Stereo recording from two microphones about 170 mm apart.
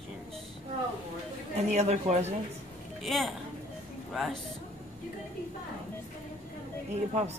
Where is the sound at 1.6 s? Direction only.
40° right (ahead or behind).